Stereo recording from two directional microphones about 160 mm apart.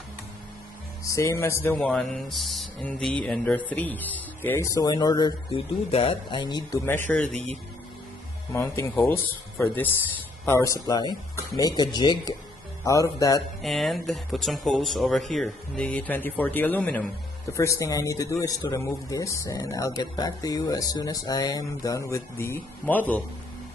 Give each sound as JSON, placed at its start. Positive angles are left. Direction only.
{"t": 1.0, "sound": "speech", "side_deg": 20}
{"t": 1.9, "sound": "speech", "side_deg": 0}
{"t": 7.2, "sound": "speech", "side_deg": -45}
{"t": 8.8, "sound": "speech", "side_deg": 15}
{"t": 10.4, "sound": "speech", "side_deg": 20}
{"t": 13.6, "sound": "speech", "side_deg": 0}